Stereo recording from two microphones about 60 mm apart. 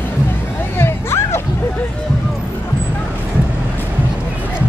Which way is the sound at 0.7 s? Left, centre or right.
Left.